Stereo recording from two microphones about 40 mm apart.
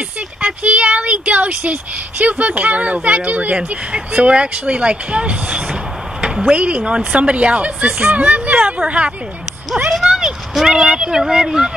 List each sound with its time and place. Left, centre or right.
0.4 s speech: right
3.9 s speech: right
9.8 s speech: centre